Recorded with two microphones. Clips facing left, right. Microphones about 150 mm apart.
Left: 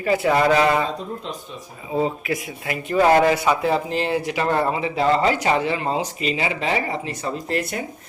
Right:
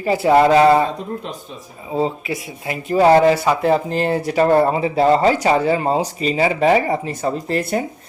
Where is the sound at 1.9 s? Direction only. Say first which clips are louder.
Right 1 dB; 25° right (ahead or behind).